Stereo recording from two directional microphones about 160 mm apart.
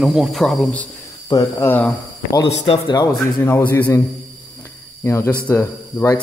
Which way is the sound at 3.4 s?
15° left (ahead or behind).